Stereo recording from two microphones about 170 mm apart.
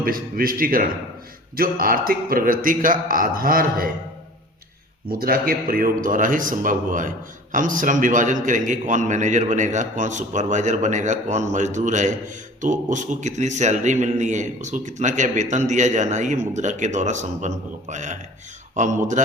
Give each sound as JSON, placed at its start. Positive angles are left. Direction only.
{"t": 0.0, "sound": "a man's voice", "side_deg": -60}
{"t": 5.0, "sound": "a man's voice", "side_deg": -60}